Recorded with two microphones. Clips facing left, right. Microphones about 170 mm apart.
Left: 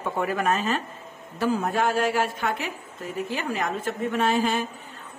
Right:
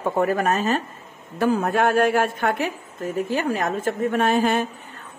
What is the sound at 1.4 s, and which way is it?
A woman's voice, 60° right (ahead or behind).